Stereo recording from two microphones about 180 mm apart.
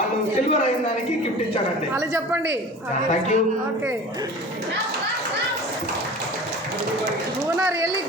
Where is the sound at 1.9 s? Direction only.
15° right (ahead or behind).